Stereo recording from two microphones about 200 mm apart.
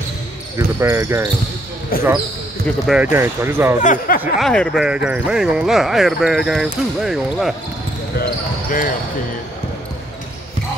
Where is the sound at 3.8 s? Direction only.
40° left (ahead or behind).